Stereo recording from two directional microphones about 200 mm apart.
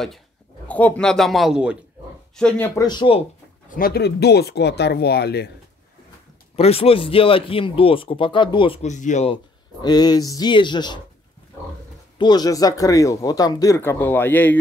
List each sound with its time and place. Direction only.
0.7 s a man's voice: 5° left (ahead or behind)
2.3 s speech: 5° left (ahead or behind); by 3.3 s 25° left (ahead or behind)
3.7 s speech: 50° left (ahead or behind)
6.5 s speech: 30° left (ahead or behind)
9.8 s speech: 20° left (ahead or behind)
12.2 s speech: 20° left (ahead or behind)